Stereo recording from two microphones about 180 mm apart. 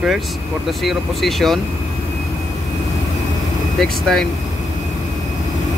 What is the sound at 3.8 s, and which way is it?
Speech, centre (ahead or behind).